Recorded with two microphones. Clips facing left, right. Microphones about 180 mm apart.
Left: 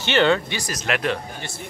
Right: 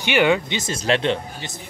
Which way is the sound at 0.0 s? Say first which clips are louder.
Right 1 dB; 15° right (ahead or behind).